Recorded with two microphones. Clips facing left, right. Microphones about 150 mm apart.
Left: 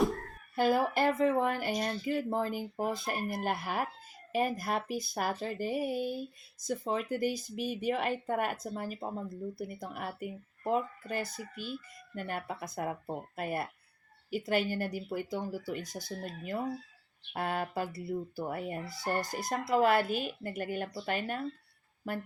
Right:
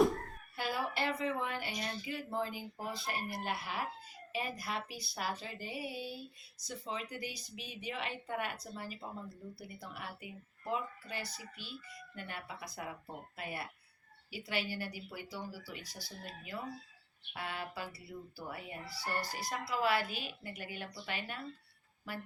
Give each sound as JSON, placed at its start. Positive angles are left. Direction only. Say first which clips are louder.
{"t": 0.5, "sound": "speech", "louder": "left 10 dB", "side_deg": 45}